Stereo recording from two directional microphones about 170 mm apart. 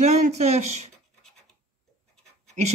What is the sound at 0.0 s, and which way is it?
Speech, 40° right (ahead or behind).